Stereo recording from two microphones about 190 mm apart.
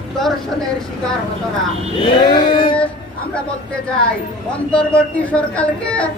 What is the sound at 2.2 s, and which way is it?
Female singing, 25° left (ahead or behind).